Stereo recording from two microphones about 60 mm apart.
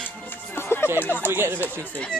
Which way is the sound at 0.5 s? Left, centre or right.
Left.